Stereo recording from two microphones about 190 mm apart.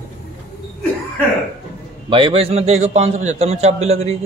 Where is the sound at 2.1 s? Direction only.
30° right (ahead or behind).